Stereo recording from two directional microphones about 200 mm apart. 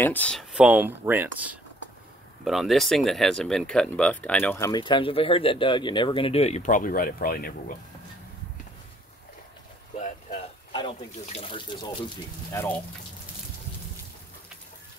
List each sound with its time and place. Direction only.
0.0 s speech: 10° left (ahead or behind); by 7.7 s 45° left (ahead or behind)
9.9 s a sound: 40° left (ahead or behind)
10.7 s speech: 25° left (ahead or behind)